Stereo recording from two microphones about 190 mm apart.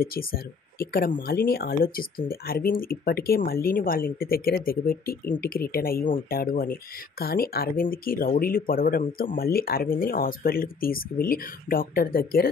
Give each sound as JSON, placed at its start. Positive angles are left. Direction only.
{"t": 0.0, "sound": "speech", "side_deg": 50}